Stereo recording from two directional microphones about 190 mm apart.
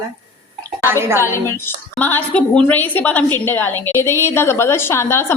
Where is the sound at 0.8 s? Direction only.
15° right (ahead or behind).